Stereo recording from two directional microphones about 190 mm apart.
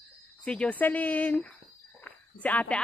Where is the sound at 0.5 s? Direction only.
5° left (ahead or behind).